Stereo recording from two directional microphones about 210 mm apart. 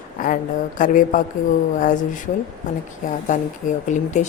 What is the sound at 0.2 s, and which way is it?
A woman's voice, 40° left (ahead or behind).